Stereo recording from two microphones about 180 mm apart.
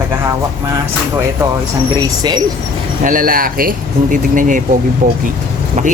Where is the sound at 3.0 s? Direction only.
50° right (ahead or behind).